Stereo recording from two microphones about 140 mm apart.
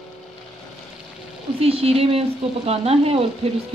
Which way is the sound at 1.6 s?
45° right (ahead or behind).